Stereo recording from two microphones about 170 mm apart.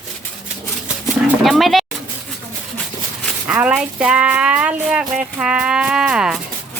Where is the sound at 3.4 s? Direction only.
5° right (ahead or behind).